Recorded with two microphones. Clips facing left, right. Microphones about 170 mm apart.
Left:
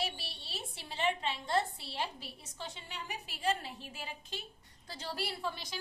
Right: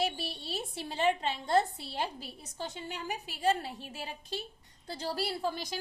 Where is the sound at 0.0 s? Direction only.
45° right (ahead or behind).